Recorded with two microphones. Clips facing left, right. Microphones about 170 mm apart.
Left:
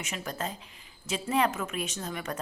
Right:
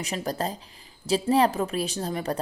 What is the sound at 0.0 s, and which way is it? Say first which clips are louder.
A woman's voice: right 6 dB; 35° right (ahead or behind).